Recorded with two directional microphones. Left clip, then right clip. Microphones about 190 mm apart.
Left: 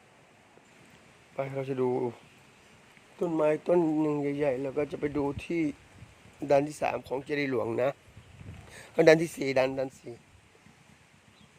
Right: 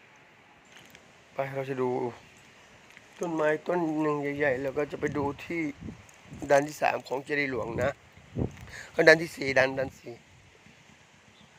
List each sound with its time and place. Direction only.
1.4 s speech: 20° left (ahead or behind)
3.2 s speech: 20° left (ahead or behind)
3.4 s speech: 35° left (ahead or behind)
3.8 s speech: 20° left (ahead or behind)
4.2 s speech: 30° left (ahead or behind)
4.4 s speech: 15° left (ahead or behind)
6.5 s speech: 20° left (ahead or behind)
7.3 s speech: 35° left (ahead or behind); by 10.2 s 20° left (ahead or behind)